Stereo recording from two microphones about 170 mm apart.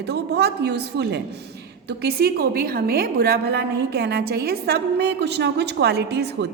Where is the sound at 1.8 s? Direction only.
65° right (ahead or behind).